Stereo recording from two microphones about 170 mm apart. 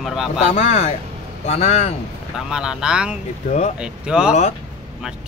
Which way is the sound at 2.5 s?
5° right (ahead or behind).